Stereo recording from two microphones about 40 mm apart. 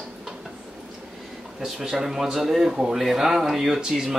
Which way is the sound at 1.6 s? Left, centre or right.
Centre.